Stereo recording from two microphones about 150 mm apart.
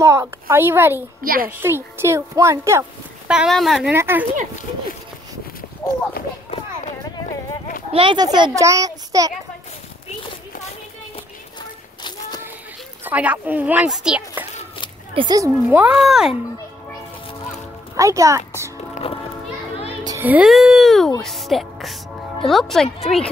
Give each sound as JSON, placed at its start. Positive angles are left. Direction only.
{"t": 0.0, "sound": "speech", "side_deg": -20}
{"t": 1.2, "sound": "a child's voice", "side_deg": -75}
{"t": 1.6, "sound": "a child's voice", "side_deg": -15}
{"t": 3.3, "sound": "speech", "side_deg": -5}
{"t": 3.9, "sound": "speech", "side_deg": -15}
{"t": 7.9, "sound": "a child's voice", "side_deg": -35}
{"t": 13.0, "sound": "speech", "side_deg": -10}
{"t": 15.1, "sound": "a child's voice", "side_deg": -25}
{"t": 15.8, "sound": "speech", "side_deg": -5}
{"t": 17.9, "sound": "a child's voice", "side_deg": -20}
{"t": 19.1, "sound": "a child's voice", "side_deg": 35}
{"t": 20.2, "sound": "speech", "side_deg": -10}